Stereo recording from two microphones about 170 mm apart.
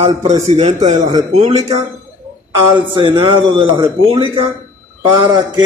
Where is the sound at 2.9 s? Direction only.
30° right (ahead or behind).